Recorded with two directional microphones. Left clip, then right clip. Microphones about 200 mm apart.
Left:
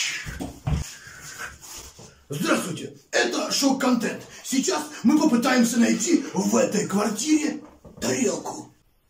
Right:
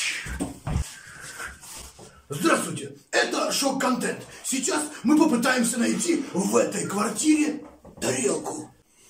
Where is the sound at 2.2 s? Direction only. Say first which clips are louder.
Right 1 dB; centre (ahead or behind).